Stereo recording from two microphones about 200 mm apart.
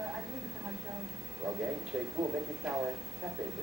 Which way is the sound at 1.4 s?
15° right (ahead or behind).